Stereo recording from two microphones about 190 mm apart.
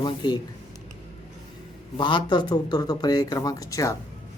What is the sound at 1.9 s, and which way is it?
Speech, 25° left (ahead or behind).